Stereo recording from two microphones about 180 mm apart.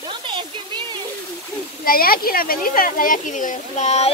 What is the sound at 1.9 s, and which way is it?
Speech, 55° left (ahead or behind).